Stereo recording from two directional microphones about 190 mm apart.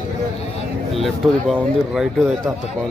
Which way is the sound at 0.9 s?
Centre (ahead or behind).